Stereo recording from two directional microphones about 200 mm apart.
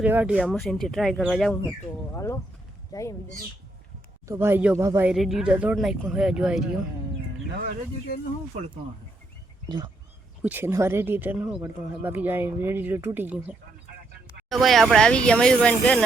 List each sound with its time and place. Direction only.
0.0 s speech: 10° right (ahead or behind)
2.1 s speech: 15° left (ahead or behind)
4.3 s speech: 10° right (ahead or behind)
5.1 s speech: centre (ahead or behind)
8.5 s speech: 35° right (ahead or behind)
9.6 s speech: 25° right (ahead or behind)
10.4 s speech: 10° right (ahead or behind)
14.5 s speech: centre (ahead or behind)